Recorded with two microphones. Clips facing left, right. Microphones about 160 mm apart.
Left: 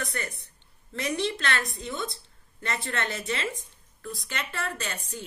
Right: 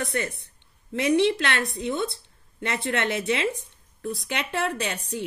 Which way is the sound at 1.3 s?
30° right (ahead or behind).